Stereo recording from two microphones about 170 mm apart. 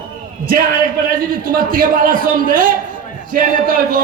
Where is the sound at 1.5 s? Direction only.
55° right (ahead or behind).